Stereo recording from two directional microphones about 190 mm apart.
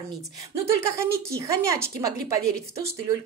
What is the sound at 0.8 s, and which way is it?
A woman's voice, 15° right (ahead or behind).